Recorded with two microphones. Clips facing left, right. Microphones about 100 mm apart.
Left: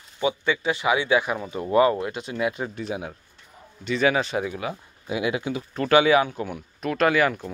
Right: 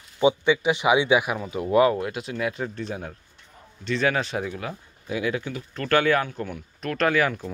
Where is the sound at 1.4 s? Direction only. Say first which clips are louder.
Even; centre (ahead or behind).